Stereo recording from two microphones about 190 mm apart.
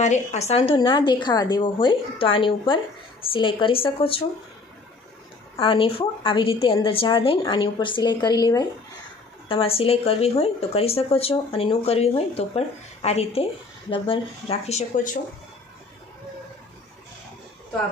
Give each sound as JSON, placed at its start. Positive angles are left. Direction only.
{"t": 0.0, "sound": "a woman's voice", "side_deg": 35}
{"t": 5.6, "sound": "a woman's voice", "side_deg": 30}
{"t": 9.5, "sound": "speech", "side_deg": 30}